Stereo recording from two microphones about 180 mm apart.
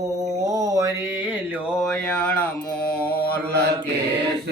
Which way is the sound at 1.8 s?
5° left (ahead or behind).